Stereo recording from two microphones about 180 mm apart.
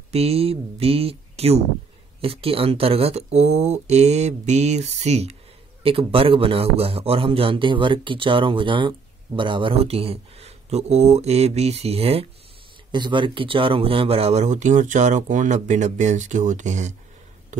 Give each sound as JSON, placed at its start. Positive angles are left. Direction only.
{"t": 0.1, "sound": "a man's voice", "side_deg": -35}